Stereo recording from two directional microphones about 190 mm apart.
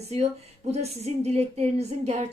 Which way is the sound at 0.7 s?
35° right (ahead or behind).